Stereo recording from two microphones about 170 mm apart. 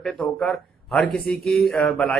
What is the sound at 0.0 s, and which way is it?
Speech, centre (ahead or behind).